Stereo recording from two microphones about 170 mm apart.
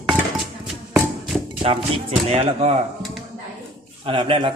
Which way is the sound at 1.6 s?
35° right (ahead or behind).